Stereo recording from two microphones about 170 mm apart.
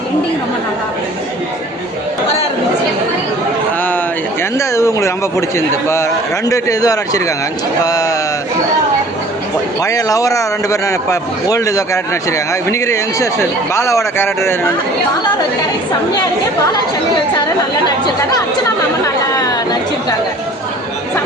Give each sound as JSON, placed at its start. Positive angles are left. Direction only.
{"t": 4.5, "sound": "a man's voice", "side_deg": 15}
{"t": 9.8, "sound": "a man's voice", "side_deg": 20}
{"t": 17.8, "sound": "a man's voice", "side_deg": 25}
{"t": 19.0, "sound": "chatter", "side_deg": 20}